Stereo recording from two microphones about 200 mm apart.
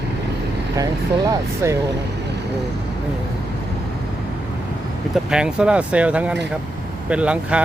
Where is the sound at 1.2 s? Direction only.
15° right (ahead or behind).